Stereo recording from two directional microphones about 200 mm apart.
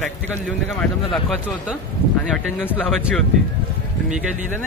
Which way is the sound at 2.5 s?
5° left (ahead or behind).